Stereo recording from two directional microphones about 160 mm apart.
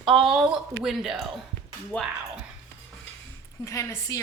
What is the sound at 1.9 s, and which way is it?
Speech, 10° left (ahead or behind).